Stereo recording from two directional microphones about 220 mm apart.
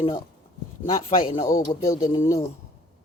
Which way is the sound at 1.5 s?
15° left (ahead or behind).